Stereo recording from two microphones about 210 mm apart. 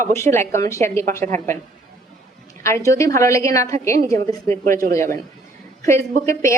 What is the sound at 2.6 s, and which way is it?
A woman's voice, 15° left (ahead or behind).